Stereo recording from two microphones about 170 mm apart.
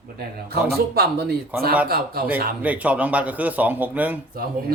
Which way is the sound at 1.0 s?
70° right (ahead or behind).